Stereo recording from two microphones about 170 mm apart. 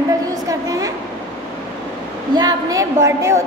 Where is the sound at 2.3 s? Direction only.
25° right (ahead or behind).